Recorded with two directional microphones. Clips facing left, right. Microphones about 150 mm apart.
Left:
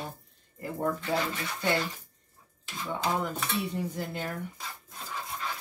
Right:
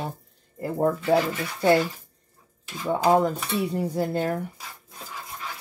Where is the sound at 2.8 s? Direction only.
45° right (ahead or behind).